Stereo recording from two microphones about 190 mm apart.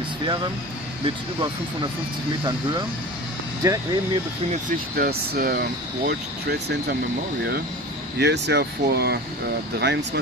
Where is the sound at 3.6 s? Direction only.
20° right (ahead or behind).